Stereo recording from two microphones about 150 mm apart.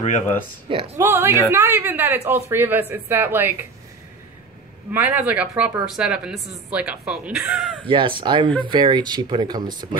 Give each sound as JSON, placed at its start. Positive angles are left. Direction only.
{"t": 0.9, "sound": "speech", "side_deg": -15}
{"t": 4.9, "sound": "speech", "side_deg": -10}
{"t": 7.8, "sound": "speech", "side_deg": -35}